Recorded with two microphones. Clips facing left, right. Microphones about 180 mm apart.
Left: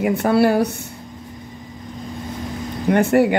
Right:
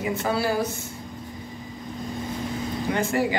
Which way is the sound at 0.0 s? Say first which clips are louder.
Left 9 dB; 65° left (ahead or behind).